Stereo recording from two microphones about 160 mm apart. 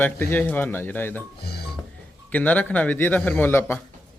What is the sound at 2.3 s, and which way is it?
Speech, 10° left (ahead or behind).